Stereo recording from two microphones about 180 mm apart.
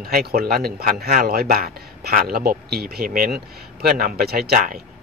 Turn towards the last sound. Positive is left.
turn(degrees=-55)  # may be behind; listen again after turning